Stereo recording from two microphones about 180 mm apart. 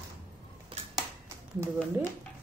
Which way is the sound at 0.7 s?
30° right (ahead or behind).